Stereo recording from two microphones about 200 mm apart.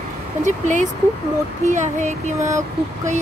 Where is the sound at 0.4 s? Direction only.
40° right (ahead or behind).